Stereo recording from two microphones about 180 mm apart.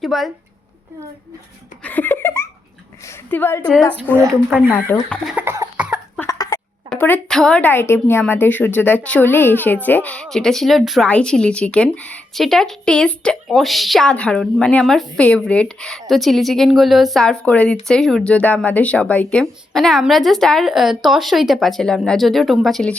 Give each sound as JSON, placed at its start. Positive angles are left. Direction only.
{"t": 0.0, "sound": "a woman's voice", "side_deg": 0}
{"t": 1.8, "sound": "laughter", "side_deg": 10}
{"t": 3.1, "sound": "a woman's voice", "side_deg": 10}
{"t": 4.4, "sound": "speech", "side_deg": -5}
{"t": 4.7, "sound": "cough", "side_deg": 10}
{"t": 6.1, "sound": "a sound", "side_deg": 20}
{"t": 6.9, "sound": "a woman's voice", "side_deg": 5}